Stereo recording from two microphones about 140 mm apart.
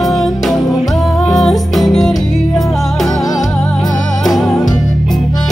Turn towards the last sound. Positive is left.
turn(degrees=0)  # may be behind; listen again after turning